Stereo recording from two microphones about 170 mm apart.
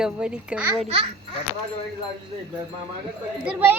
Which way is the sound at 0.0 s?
5° right (ahead or behind).